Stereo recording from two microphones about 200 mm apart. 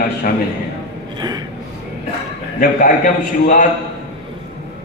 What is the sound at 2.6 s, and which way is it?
A man's voice, 40° left (ahead or behind).